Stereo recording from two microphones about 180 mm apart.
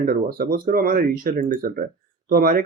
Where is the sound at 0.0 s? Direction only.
55° right (ahead or behind).